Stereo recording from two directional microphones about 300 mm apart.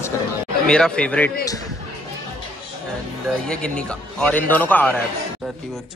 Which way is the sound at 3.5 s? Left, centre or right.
Centre.